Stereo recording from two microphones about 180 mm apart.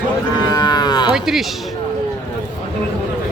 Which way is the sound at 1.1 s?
Centre (ahead or behind).